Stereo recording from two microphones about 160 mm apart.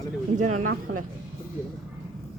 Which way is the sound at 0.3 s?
50° right (ahead or behind).